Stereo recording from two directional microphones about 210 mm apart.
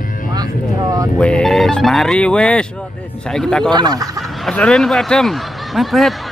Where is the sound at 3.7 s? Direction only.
20° right (ahead or behind).